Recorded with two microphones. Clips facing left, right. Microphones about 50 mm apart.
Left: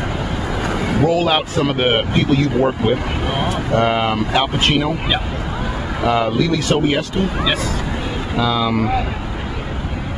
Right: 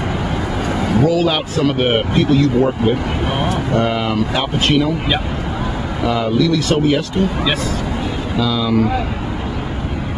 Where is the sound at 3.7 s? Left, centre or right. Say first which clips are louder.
Left 2 dB; left.